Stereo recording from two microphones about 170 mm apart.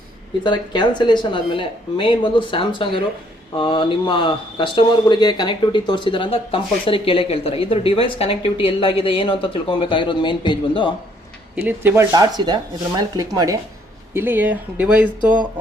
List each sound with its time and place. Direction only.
0.4 s speech: 25° left (ahead or behind)
11.5 s speech: 10° right (ahead or behind)